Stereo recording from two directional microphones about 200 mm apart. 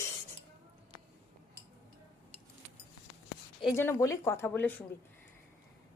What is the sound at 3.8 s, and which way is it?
Speech, 15° left (ahead or behind).